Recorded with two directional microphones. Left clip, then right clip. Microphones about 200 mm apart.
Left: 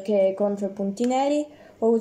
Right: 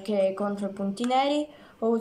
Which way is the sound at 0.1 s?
5° left (ahead or behind).